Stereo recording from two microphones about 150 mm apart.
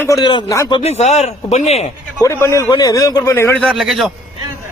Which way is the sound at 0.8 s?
45° left (ahead or behind).